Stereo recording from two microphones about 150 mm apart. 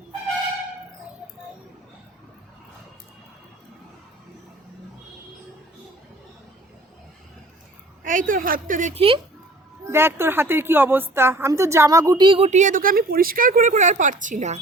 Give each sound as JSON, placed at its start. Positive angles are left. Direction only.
{"t": 8.0, "sound": "speech", "side_deg": -60}
{"t": 9.0, "sound": "speech", "side_deg": -35}
{"t": 9.9, "sound": "a woman's voice", "side_deg": -15}
{"t": 12.5, "sound": "speech", "side_deg": -55}